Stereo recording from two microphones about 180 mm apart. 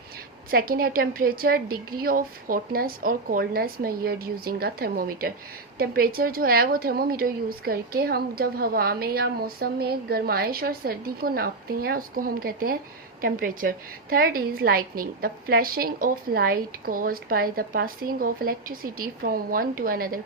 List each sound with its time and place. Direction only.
0.5 s a woman's voice: 55° right (ahead or behind)